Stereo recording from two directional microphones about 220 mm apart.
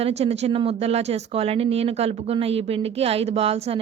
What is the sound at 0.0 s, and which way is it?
Speech, 30° right (ahead or behind).